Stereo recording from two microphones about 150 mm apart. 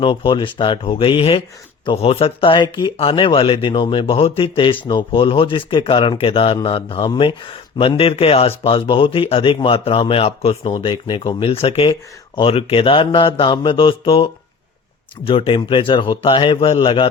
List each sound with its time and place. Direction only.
0.0 s speech: 35° left (ahead or behind)
15.3 s speech: 35° left (ahead or behind)